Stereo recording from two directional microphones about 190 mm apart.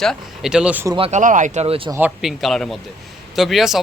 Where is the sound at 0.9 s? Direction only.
30° right (ahead or behind).